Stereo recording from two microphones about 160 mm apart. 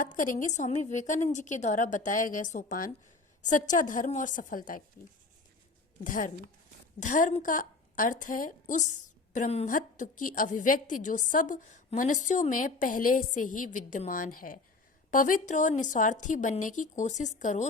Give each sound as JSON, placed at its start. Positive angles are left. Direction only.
{"t": 0.0, "sound": "a woman's voice", "side_deg": 55}
{"t": 6.0, "sound": "a woman's voice", "side_deg": 55}
{"t": 9.3, "sound": "a woman's voice", "side_deg": 45}
{"t": 9.6, "sound": "a woman's voice", "side_deg": 55}